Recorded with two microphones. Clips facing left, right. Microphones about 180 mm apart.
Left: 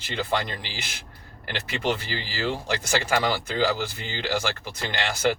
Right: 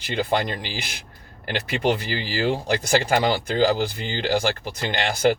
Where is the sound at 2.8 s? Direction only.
35° right (ahead or behind).